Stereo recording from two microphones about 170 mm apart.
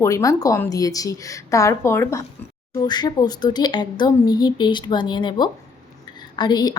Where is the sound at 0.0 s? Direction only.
20° left (ahead or behind).